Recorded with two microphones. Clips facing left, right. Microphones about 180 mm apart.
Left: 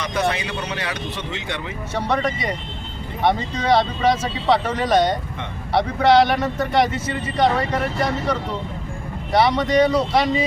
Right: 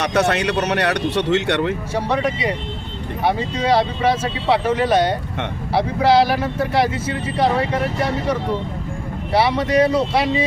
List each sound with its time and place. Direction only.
0.0 s speech: 75° right (ahead or behind)
2.0 s speech: 10° right (ahead or behind)